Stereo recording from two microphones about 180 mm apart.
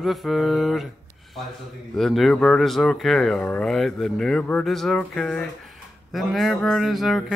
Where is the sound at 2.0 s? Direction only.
Centre (ahead or behind).